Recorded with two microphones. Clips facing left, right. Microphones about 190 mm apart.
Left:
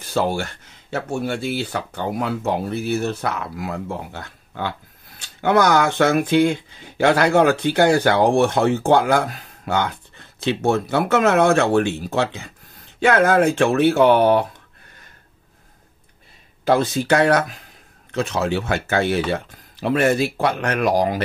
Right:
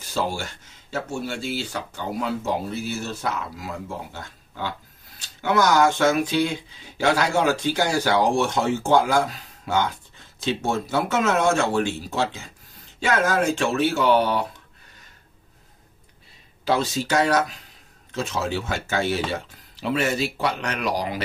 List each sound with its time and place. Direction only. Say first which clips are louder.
0.0 s speech: left 5 dB; 60° left (ahead or behind)
16.6 s speech: left 5 dB; 55° left (ahead or behind)